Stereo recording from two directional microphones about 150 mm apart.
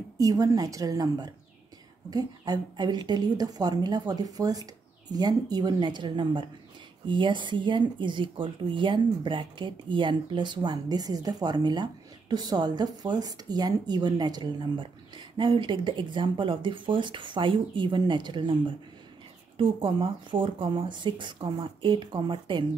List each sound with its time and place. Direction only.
0.2 s a woman's voice: 25° right (ahead or behind)